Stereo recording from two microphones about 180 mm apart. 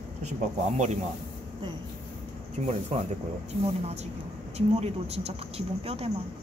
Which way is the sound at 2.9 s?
40° right (ahead or behind).